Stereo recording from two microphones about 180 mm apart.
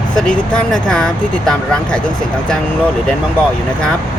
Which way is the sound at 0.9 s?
5° left (ahead or behind).